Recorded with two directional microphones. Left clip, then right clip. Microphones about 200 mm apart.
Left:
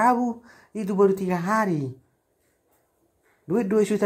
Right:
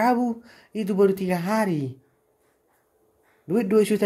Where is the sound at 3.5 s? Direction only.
20° right (ahead or behind).